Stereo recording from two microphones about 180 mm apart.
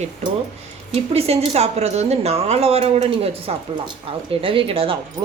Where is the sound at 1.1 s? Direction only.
35° right (ahead or behind).